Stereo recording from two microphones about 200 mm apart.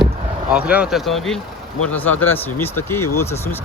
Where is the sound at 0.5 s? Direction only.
5° right (ahead or behind); by 3.6 s 10° left (ahead or behind).